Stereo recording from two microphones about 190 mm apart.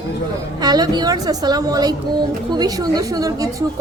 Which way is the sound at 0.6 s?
20° right (ahead or behind).